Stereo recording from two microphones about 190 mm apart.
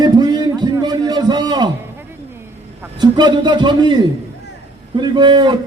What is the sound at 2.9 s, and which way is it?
A man's voice, 25° right (ahead or behind).